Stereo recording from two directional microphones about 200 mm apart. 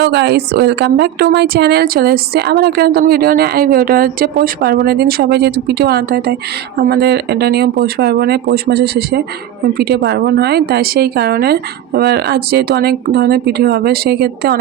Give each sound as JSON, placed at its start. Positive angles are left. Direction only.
{"t": 0.0, "sound": "a woman's voice", "side_deg": -60}